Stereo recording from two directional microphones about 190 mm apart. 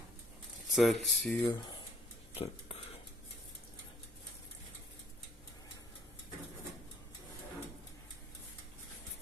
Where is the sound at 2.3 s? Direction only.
30° left (ahead or behind).